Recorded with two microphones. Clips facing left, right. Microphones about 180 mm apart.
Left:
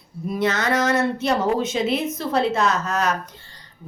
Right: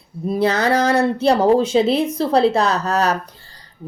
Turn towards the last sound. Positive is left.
turn(degrees=-35)  # may be behind; listen again after turning